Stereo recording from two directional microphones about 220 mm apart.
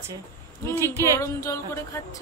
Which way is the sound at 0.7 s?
10° left (ahead or behind).